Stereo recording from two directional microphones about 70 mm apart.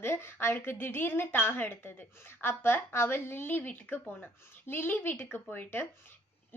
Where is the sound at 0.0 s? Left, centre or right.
Left.